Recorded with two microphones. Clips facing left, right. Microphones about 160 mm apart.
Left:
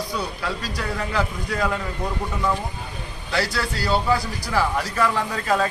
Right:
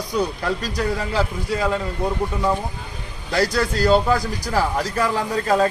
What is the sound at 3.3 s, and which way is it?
A man's voice, 45° right (ahead or behind).